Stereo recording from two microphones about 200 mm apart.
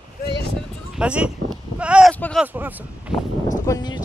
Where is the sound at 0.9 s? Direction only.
5° right (ahead or behind).